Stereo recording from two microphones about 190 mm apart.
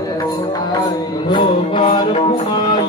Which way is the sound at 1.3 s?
25° left (ahead or behind).